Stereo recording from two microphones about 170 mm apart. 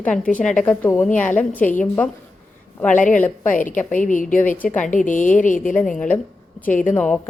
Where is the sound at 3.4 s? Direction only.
50° left (ahead or behind).